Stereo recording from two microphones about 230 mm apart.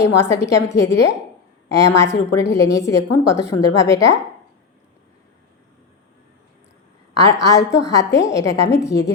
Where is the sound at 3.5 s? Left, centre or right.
Left.